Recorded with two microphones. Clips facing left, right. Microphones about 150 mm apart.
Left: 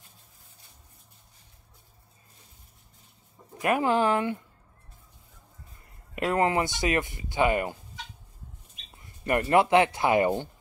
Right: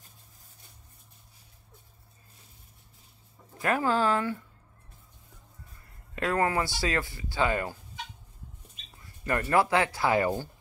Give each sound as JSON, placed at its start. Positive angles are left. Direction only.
{"t": 3.5, "sound": "speech", "side_deg": 20}
{"t": 6.1, "sound": "speech", "side_deg": 20}
{"t": 8.9, "sound": "speech", "side_deg": 20}